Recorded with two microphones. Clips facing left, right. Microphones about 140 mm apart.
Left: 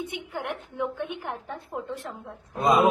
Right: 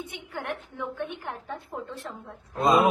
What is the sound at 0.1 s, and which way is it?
Speech, 15° left (ahead or behind).